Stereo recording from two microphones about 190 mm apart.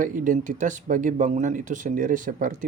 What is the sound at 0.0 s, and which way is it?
Speech, 45° right (ahead or behind).